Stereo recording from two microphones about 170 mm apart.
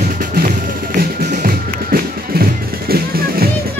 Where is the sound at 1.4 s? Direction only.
60° right (ahead or behind).